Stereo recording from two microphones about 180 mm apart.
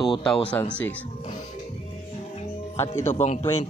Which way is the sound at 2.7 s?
15° left (ahead or behind).